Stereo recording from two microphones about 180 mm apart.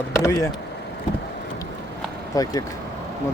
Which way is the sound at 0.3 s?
15° left (ahead or behind).